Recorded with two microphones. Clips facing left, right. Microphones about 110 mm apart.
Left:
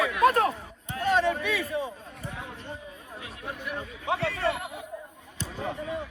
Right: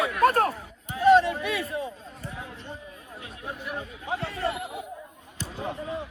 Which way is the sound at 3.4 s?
25° right (ahead or behind).